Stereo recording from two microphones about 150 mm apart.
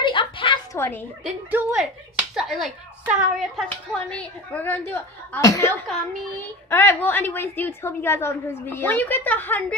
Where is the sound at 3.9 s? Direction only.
10° left (ahead or behind).